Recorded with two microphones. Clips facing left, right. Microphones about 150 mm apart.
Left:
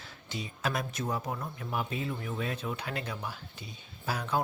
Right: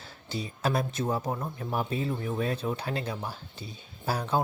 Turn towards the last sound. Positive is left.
turn(degrees=-35)  # may be behind; listen again after turning